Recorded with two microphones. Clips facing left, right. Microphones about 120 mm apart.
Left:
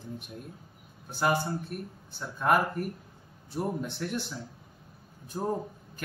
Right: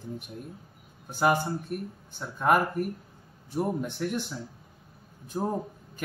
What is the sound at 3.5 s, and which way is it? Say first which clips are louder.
Speech: right 3 dB; 15° right (ahead or behind).